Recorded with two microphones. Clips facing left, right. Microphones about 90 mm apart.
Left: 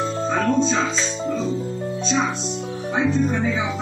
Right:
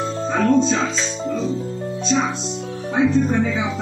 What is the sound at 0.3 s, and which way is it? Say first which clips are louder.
Music: right 4 dB; centre (ahead or behind).